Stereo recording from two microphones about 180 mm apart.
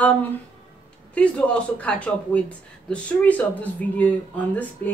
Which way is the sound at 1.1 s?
5° left (ahead or behind).